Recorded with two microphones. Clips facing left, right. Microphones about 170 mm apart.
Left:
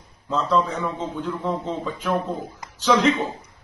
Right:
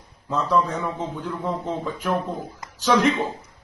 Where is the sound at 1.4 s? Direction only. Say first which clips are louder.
Right 2 dB; centre (ahead or behind).